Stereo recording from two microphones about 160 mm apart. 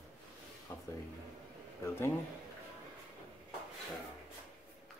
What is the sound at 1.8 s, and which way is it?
Speech, 15° left (ahead or behind).